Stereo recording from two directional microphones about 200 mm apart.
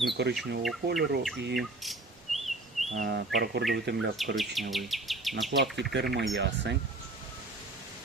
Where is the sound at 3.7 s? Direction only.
55° right (ahead or behind).